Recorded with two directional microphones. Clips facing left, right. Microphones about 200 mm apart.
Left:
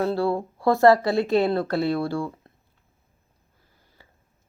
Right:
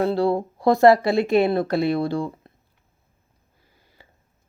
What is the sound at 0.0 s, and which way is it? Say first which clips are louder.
Speech: right 3 dB; 15° right (ahead or behind).